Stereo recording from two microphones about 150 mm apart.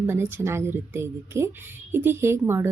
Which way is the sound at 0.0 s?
15° right (ahead or behind).